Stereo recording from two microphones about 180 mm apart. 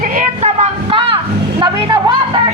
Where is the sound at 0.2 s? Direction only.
40° right (ahead or behind).